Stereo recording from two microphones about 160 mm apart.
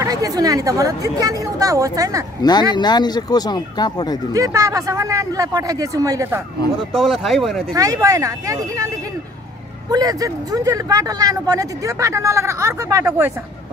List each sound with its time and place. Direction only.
0.0 s speech: 20° right (ahead or behind)
2.7 s speech: 25° left (ahead or behind)
4.3 s speech: 20° right (ahead or behind)
6.8 s speech: centre (ahead or behind)
7.7 s speech: 20° right (ahead or behind)